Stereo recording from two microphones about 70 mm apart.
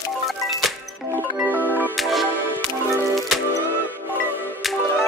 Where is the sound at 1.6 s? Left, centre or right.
Left.